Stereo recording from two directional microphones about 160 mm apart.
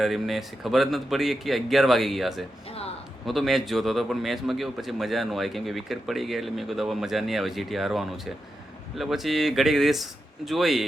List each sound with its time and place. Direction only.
0.0 s a man's voice: centre (ahead or behind)
2.6 s a sound: 40° left (ahead or behind)
3.2 s a man's voice: centre (ahead or behind)